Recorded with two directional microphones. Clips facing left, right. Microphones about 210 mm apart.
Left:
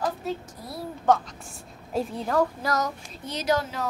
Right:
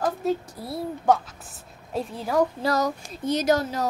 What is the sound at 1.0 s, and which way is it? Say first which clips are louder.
A child's voice: even; 10° right (ahead or behind).